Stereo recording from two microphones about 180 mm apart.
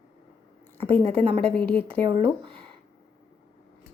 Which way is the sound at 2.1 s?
30° right (ahead or behind).